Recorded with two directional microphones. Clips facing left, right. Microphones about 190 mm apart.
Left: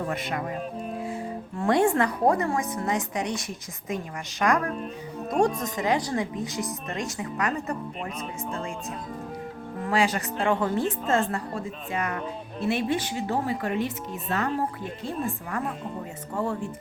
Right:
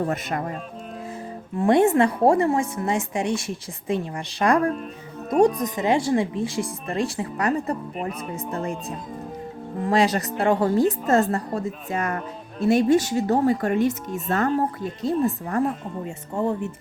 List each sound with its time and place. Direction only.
0.1 s speech: 45° right (ahead or behind)
1.5 s a woman's voice: 20° right (ahead or behind)
5.5 s a woman's voice: 20° right (ahead or behind); by 8.0 s 35° right (ahead or behind)
9.8 s a woman's voice: 35° right (ahead or behind)
16.3 s a woman's voice: 20° right (ahead or behind)